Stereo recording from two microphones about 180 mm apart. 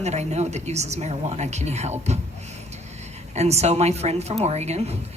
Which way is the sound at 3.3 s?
35° right (ahead or behind).